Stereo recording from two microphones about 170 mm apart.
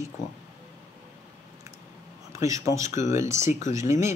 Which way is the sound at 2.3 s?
20° right (ahead or behind).